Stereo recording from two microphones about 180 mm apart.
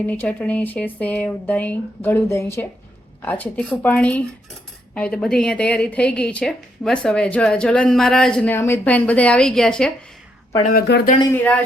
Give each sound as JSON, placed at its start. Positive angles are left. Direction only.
{"t": 0.1, "sound": "a woman's voice", "side_deg": 10}
{"t": 10.7, "sound": "speech", "side_deg": 60}